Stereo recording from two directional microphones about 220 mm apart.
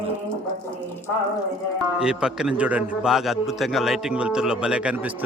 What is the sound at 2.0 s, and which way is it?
A man's voice, 5° right (ahead or behind).